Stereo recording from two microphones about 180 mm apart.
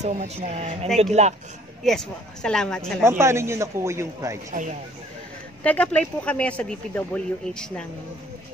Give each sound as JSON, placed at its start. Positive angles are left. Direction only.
{"t": 0.0, "sound": "speech", "side_deg": -35}
{"t": 1.9, "sound": "speech", "side_deg": 5}
{"t": 3.0, "sound": "speech", "side_deg": -15}
{"t": 4.5, "sound": "speech", "side_deg": -45}
{"t": 5.6, "sound": "speech", "side_deg": 5}